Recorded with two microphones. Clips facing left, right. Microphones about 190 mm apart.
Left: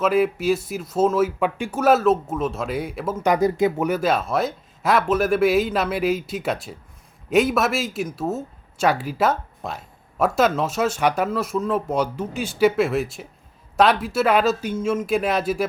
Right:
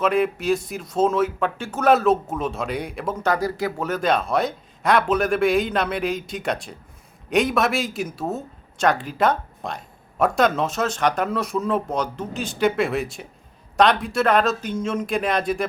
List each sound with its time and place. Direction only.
0.0 s speech: 5° left (ahead or behind)
3.2 s speech: 20° left (ahead or behind)
3.8 s speech: 5° left (ahead or behind)